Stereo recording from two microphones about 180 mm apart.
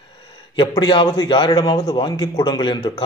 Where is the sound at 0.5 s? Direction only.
25° left (ahead or behind).